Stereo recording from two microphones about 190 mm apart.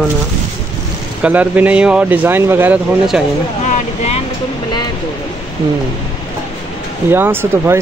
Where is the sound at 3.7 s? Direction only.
35° left (ahead or behind).